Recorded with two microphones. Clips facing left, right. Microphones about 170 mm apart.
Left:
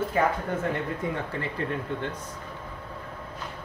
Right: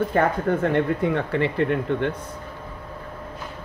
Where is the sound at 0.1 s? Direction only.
60° right (ahead or behind).